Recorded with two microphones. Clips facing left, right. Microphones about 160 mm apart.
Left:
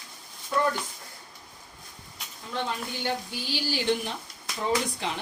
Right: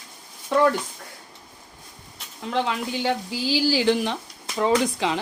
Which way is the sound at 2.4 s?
90° right.